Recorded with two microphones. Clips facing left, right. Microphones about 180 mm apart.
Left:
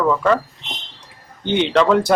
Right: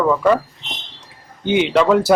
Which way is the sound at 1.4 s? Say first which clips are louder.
Right 1 dB; 10° right (ahead or behind).